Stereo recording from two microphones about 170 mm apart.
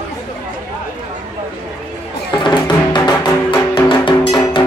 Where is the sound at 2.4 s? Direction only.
25° left (ahead or behind).